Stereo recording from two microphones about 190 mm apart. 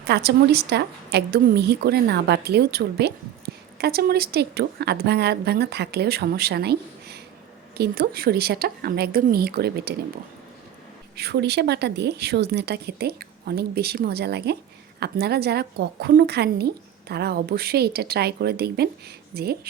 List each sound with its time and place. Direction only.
0.0 s a woman's voice: 60° right (ahead or behind)
11.2 s a woman's voice: 60° right (ahead or behind)